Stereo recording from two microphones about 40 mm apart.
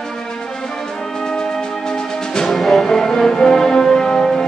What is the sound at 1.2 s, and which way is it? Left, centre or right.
Music, centre.